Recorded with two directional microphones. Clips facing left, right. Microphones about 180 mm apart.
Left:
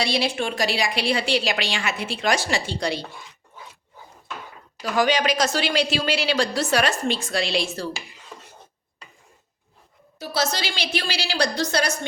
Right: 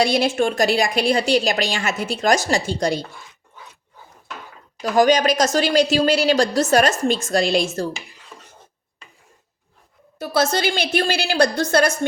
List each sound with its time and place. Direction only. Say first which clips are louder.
0.0 s a woman's voice: right 6 dB; 50° right (ahead or behind)
4.8 s a woman's voice: right 5 dB; 40° right (ahead or behind)
10.2 s a woman's voice: right 6 dB; 55° right (ahead or behind)